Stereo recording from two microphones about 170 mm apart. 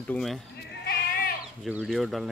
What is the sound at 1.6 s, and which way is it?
Speech, 5° right (ahead or behind).